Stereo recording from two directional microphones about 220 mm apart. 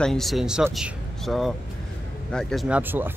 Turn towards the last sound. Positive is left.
turn(degrees=-10)  # may be behind; listen again after turning